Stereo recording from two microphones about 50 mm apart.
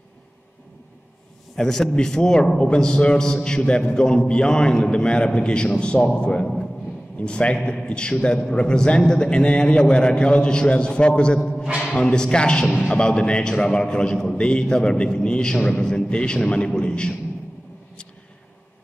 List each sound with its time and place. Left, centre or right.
1.6 s a man's voice: centre